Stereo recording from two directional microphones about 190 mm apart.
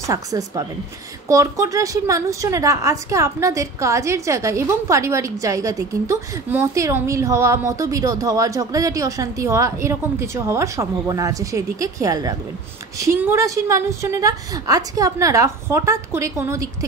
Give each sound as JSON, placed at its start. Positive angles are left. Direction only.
{"t": 0.0, "sound": "a woman's voice", "side_deg": -15}